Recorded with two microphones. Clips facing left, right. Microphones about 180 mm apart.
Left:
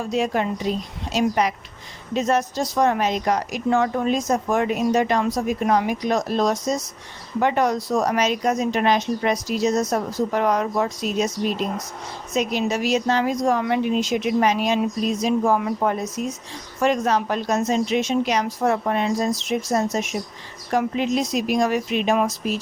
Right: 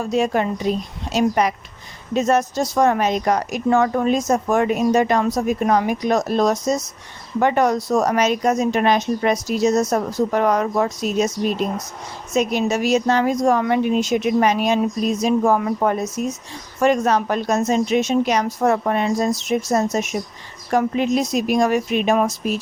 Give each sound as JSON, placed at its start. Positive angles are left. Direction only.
{"t": 0.1, "sound": "a woman's voice", "side_deg": -50}
{"t": 7.9, "sound": "speech", "side_deg": -75}
{"t": 8.2, "sound": "a woman's voice", "side_deg": -45}